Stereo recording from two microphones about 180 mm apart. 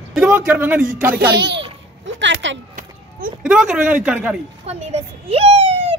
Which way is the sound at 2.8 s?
50° right (ahead or behind).